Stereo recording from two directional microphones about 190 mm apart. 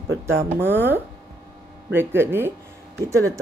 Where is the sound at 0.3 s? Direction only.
10° right (ahead or behind).